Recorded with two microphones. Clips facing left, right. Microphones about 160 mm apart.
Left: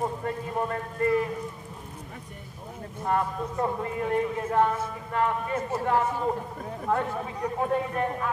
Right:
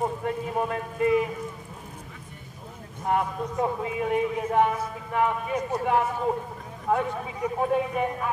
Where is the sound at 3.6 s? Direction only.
10° right (ahead or behind).